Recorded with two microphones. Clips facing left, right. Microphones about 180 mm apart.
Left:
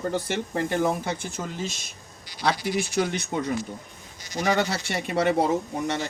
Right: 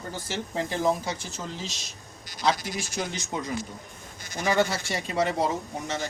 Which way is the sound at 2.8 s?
60° left (ahead or behind).